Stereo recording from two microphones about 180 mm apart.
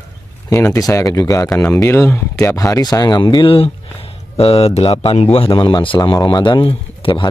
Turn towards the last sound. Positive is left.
turn(degrees=30)  # may be behind; listen again after turning